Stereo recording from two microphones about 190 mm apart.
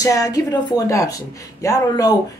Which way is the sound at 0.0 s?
20° left (ahead or behind).